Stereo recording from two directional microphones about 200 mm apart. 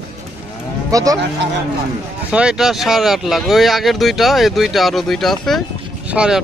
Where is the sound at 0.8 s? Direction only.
15° right (ahead or behind).